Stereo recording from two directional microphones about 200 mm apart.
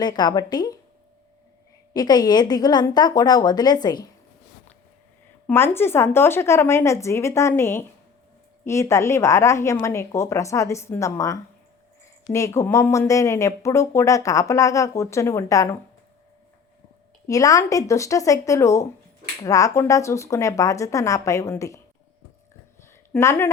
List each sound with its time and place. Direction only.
0.0 s a woman's voice: 20° left (ahead or behind)
1.9 s a woman's voice: 20° left (ahead or behind)
5.5 s speech: 10° left (ahead or behind)
17.2 s speech: 15° left (ahead or behind)
22.8 s a sound: 15° left (ahead or behind)